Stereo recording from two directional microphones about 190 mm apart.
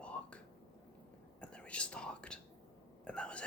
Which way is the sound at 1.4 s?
5° left (ahead or behind).